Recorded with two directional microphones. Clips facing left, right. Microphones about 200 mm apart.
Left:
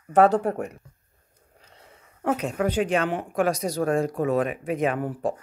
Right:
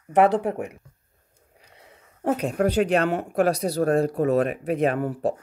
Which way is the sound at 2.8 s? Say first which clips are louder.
Right 3 dB; 40° right (ahead or behind).